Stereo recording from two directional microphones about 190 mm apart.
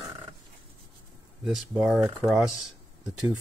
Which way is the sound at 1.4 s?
5° right (ahead or behind).